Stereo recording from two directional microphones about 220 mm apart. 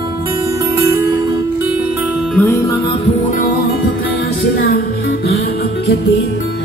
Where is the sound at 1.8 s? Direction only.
5° right (ahead or behind).